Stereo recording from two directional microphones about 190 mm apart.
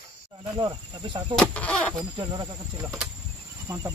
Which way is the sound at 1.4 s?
5° left (ahead or behind).